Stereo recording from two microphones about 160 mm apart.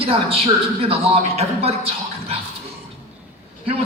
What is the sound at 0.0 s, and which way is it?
A man's voice, 35° right (ahead or behind).